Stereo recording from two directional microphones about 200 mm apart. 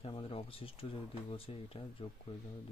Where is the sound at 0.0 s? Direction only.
30° left (ahead or behind).